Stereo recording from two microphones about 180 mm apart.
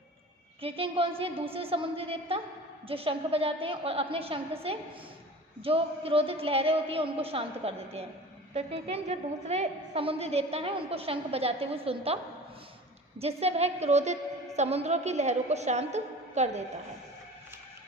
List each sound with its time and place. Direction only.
0.6 s a woman's voice: 30° right (ahead or behind)